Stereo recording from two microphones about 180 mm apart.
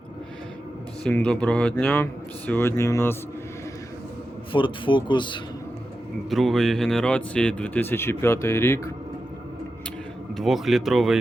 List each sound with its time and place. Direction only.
1.0 s speech: 5° left (ahead or behind)
4.5 s speech: 25° left (ahead or behind)
6.3 s speech: centre (ahead or behind)
10.3 s speech: centre (ahead or behind)